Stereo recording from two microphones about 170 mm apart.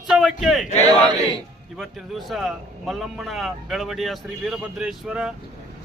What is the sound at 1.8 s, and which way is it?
A man's voice, centre (ahead or behind).